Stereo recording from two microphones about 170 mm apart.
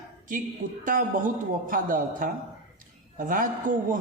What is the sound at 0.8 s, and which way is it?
Speech, 50° right (ahead or behind).